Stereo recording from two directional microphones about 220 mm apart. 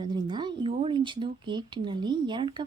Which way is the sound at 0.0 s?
20° right (ahead or behind).